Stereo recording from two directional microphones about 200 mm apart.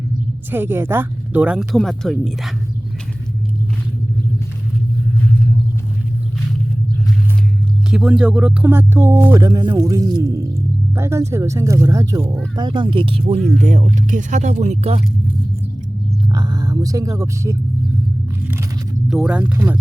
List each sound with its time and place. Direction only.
0.5 s speech: 10° right (ahead or behind)
7.9 s speech: 5° right (ahead or behind); by 15.0 s 35° right (ahead or behind)
16.3 s speech: 20° right (ahead or behind)
19.0 s speech: 5° right (ahead or behind)